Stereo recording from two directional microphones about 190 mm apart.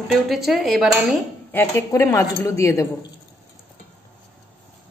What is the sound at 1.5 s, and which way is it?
A woman's voice, 10° left (ahead or behind).